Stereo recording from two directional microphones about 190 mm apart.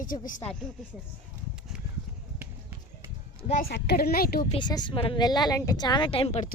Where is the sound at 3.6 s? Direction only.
60° left (ahead or behind).